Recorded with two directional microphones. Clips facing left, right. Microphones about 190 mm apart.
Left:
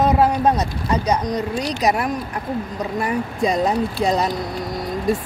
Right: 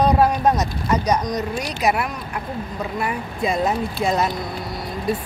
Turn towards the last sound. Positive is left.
turn(degrees=45)  # may be behind; listen again after turning